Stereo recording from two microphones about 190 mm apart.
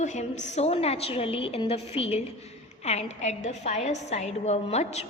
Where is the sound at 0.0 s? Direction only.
40° left (ahead or behind).